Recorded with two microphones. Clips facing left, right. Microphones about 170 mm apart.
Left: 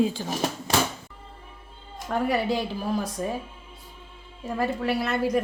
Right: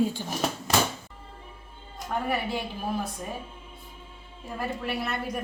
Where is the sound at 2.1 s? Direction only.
90° left.